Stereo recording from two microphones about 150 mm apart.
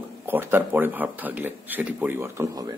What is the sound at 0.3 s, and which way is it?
A man's voice, 15° right (ahead or behind).